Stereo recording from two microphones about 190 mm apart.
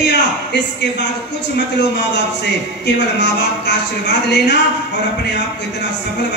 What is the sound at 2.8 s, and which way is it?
Speech, 65° left (ahead or behind).